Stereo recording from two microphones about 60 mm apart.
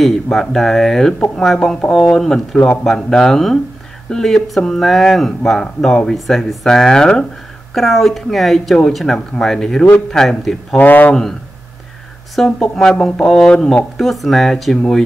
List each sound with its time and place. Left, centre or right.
0.0 s speech: centre
10.8 s speech: left
12.4 s speech: centre